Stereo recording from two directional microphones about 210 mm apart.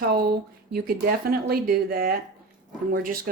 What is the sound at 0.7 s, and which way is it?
Speech, 45° right (ahead or behind).